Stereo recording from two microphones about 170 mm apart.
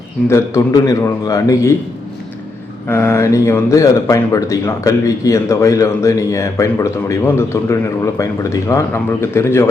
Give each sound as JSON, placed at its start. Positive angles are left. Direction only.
{"t": 0.3, "sound": "a man's voice", "side_deg": 15}
{"t": 2.8, "sound": "speech", "side_deg": 15}